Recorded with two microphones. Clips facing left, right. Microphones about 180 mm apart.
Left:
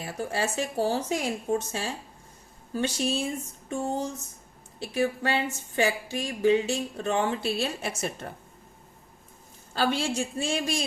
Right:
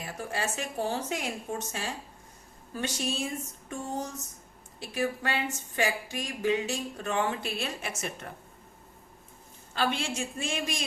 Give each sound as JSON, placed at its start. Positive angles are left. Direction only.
{"t": 0.0, "sound": "speech", "side_deg": 30}
{"t": 9.7, "sound": "speech", "side_deg": 35}